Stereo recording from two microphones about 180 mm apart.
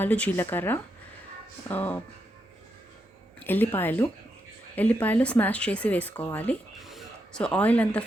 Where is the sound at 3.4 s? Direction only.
10° left (ahead or behind).